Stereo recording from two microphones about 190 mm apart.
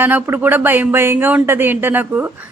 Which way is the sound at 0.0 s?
10° right (ahead or behind).